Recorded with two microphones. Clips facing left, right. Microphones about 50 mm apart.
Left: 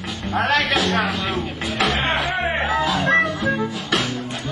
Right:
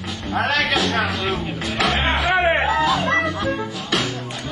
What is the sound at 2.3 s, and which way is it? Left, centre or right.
Music, right.